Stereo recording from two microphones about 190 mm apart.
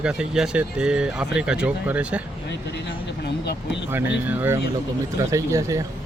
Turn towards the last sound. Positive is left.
turn(degrees=-15)  # may be behind; listen again after turning